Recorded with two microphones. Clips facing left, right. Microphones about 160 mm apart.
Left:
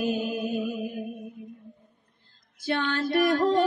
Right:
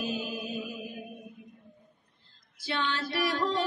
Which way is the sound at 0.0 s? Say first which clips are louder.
Left 7 dB; 55° left (ahead or behind).